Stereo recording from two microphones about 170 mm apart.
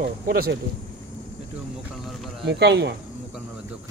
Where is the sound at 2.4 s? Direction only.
85° right.